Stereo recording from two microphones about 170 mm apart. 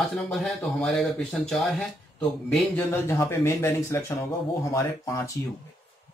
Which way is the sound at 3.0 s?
15° left (ahead or behind).